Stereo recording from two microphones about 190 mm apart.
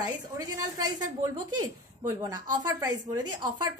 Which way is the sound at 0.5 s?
20° right (ahead or behind).